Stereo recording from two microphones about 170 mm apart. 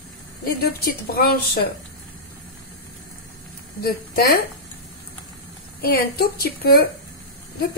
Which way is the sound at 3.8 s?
60° left (ahead or behind).